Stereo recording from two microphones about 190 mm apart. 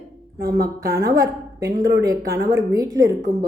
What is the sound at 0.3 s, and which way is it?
Speech, 50° right (ahead or behind).